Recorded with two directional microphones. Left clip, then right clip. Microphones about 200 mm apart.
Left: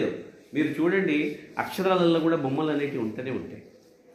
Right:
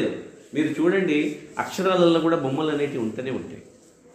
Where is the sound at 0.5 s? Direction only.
40° left (ahead or behind).